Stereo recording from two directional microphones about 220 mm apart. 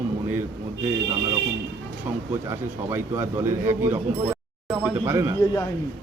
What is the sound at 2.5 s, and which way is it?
A man's voice, 10° right (ahead or behind).